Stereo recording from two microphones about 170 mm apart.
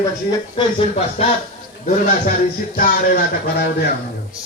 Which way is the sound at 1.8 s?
50° left (ahead or behind).